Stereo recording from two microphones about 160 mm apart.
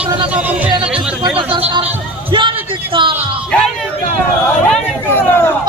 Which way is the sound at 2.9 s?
30° right (ahead or behind).